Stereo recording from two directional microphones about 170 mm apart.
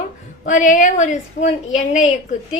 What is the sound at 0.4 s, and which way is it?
Speech, 50° left (ahead or behind).